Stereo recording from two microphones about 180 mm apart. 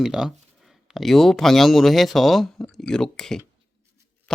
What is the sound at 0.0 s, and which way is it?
Speech, 5° right (ahead or behind).